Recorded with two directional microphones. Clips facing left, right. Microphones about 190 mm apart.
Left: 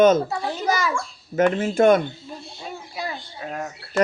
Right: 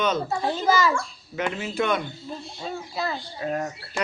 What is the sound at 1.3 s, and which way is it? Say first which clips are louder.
Speech: left 8 dB; 50° left (ahead or behind).